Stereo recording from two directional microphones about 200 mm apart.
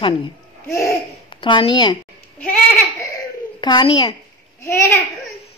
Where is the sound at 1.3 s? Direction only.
25° left (ahead or behind).